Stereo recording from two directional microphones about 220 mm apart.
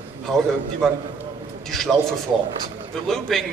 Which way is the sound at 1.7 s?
Centre (ahead or behind).